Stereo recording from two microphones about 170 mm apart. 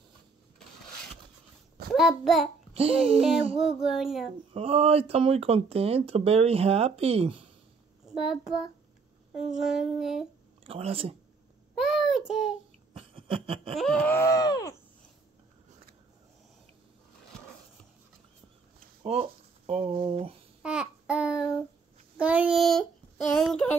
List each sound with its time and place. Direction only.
2.0 s child singing: centre (ahead or behind)
2.7 s speech: 35° right (ahead or behind)
3.5 s child singing: centre (ahead or behind)
4.6 s speech: 35° right (ahead or behind)
9.5 s child singing: centre (ahead or behind)
10.6 s speech: 35° right (ahead or behind)
11.7 s child singing: 5° right (ahead or behind)
12.9 s a sound: 35° right (ahead or behind)
13.7 s groan: 5° left (ahead or behind); by 14.8 s 20° left (ahead or behind)
19.0 s speech: 40° right (ahead or behind)
20.6 s babbling: 5° right (ahead or behind)
22.2 s child singing: 5° right (ahead or behind)